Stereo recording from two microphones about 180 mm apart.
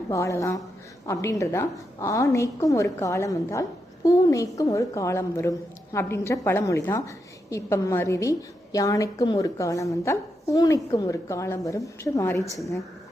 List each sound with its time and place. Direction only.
0.1 s a woman's voice: 15° left (ahead or behind)